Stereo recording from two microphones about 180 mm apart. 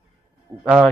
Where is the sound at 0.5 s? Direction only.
20° right (ahead or behind).